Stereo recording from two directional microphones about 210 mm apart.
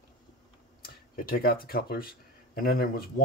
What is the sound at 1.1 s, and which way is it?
Speech, 45° left (ahead or behind).